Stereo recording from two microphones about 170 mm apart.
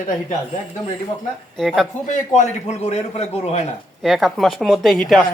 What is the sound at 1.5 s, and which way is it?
Speech, centre (ahead or behind).